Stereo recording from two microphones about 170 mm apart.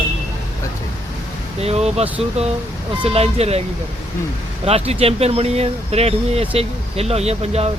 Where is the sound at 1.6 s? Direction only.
35° right (ahead or behind).